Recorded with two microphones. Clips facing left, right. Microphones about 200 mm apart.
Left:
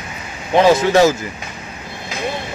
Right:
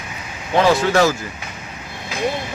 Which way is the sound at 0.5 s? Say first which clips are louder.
Left 3 dB; 20° left (ahead or behind).